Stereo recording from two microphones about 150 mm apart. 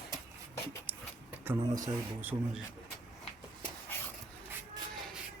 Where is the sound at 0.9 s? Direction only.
10° right (ahead or behind).